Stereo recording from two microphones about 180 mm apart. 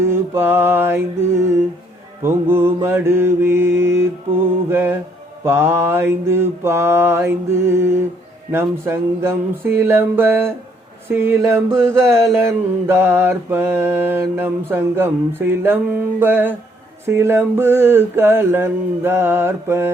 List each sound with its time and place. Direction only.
0.0 s mantra: 15° right (ahead or behind)